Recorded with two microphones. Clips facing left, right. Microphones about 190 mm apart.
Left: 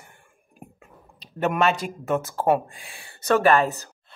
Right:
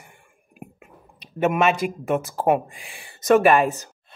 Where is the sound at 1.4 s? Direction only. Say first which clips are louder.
Right 2 dB; 5° right (ahead or behind).